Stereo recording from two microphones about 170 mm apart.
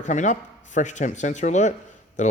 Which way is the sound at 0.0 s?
45° left (ahead or behind).